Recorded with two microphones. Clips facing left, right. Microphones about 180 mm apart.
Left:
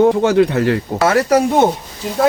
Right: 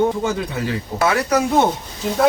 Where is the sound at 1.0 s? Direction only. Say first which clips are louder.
Left 4 dB; 40° left (ahead or behind).